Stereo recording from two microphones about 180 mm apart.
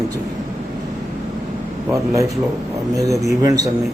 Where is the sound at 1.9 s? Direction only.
15° right (ahead or behind).